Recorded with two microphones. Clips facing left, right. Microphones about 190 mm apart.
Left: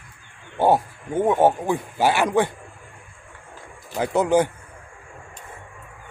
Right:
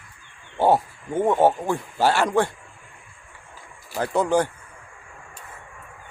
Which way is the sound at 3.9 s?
15° left (ahead or behind).